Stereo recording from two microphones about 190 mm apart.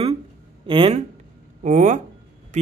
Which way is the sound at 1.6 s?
40° right (ahead or behind).